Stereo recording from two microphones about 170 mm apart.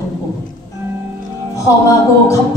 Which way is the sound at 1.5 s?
20° left (ahead or behind).